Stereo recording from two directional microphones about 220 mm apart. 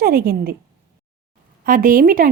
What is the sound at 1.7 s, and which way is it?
Child singing, 40° right (ahead or behind).